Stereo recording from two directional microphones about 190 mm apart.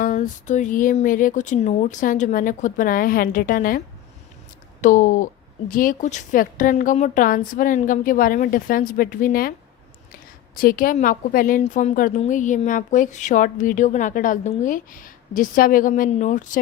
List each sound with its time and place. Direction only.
0.0 s a woman's voice: 45° left (ahead or behind)